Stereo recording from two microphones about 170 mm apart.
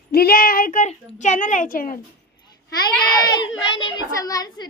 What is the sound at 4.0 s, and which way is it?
Speech, 20° left (ahead or behind).